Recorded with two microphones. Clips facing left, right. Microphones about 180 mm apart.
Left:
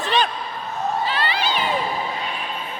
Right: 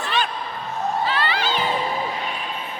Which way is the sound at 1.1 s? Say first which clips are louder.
Even; 20° left (ahead or behind).